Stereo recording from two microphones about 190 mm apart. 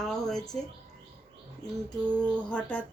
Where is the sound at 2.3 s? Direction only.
5° left (ahead or behind).